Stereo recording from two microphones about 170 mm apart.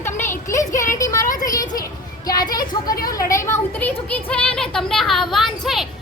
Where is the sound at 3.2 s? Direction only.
15° left (ahead or behind); by 5.8 s centre (ahead or behind).